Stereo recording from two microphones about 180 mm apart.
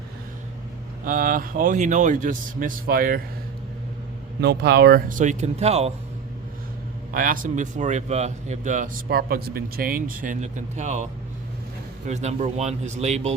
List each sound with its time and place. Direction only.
1.0 s a man's voice: 50° right (ahead or behind)
4.4 s a man's voice: 65° right (ahead or behind); by 5.9 s 35° right (ahead or behind)
7.1 s a man's voice: 50° right (ahead or behind)